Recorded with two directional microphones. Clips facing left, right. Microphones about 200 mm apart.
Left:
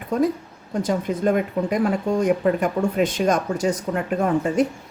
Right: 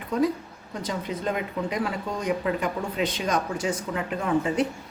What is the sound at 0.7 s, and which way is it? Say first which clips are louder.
Speech: left 8 dB; 45° left (ahead or behind).